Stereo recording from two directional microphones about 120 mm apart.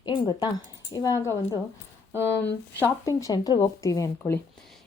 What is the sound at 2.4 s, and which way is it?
Speech, 15° left (ahead or behind).